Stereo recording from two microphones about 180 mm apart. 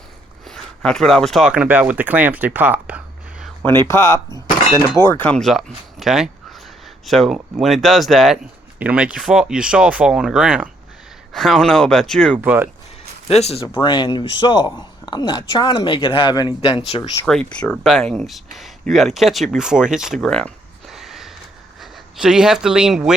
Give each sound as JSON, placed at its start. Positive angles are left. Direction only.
{"t": 0.4, "sound": "speech", "side_deg": 5}
{"t": 3.6, "sound": "speech", "side_deg": 15}
{"t": 12.4, "sound": "speech", "side_deg": -10}
{"t": 13.2, "sound": "speech", "side_deg": 35}
{"t": 13.8, "sound": "a woman's voice", "side_deg": 25}
{"t": 17.2, "sound": "speech", "side_deg": 5}